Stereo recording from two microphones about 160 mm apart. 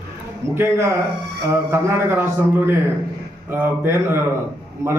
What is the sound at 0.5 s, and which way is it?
A man's voice, 15° right (ahead or behind).